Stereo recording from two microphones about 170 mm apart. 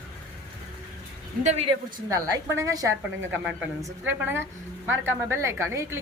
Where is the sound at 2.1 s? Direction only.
20° right (ahead or behind).